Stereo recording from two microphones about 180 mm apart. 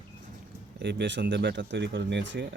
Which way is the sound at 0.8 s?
75° right (ahead or behind).